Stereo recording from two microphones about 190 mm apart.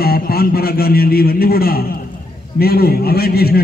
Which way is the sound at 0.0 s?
55° left (ahead or behind).